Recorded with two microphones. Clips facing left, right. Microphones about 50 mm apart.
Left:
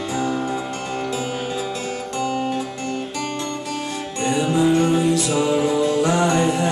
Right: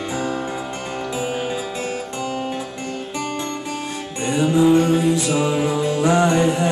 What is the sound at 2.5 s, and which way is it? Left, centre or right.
Music, centre.